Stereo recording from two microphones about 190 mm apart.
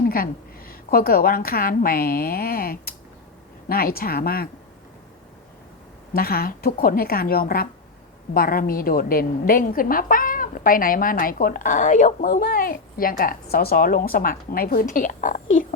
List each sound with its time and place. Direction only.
0.0 s a woman's voice: 50° left (ahead or behind)
6.1 s a woman's voice: 50° left (ahead or behind)